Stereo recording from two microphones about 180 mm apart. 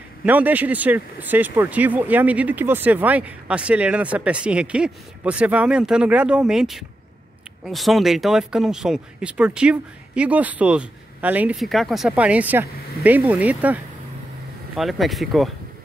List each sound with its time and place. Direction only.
0.2 s speech: 10° right (ahead or behind)
14.8 s speech: centre (ahead or behind)